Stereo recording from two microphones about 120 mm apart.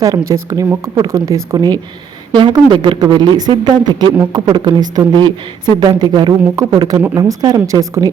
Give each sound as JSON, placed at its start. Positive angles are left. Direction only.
{"t": 0.0, "sound": "speech", "side_deg": -25}